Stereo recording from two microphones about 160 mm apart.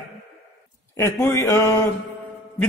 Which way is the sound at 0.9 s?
15° left (ahead or behind).